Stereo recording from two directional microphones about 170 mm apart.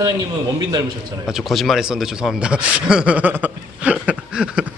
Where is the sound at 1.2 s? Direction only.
Centre (ahead or behind).